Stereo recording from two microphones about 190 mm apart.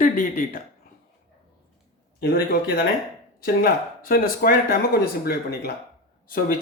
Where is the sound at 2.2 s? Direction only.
55° left (ahead or behind).